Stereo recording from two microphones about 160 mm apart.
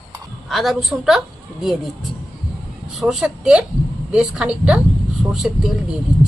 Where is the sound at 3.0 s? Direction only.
Centre (ahead or behind).